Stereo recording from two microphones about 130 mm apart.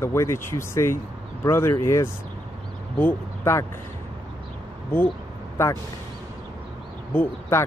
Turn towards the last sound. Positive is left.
turn(degrees=15)  # may be behind; listen again after turning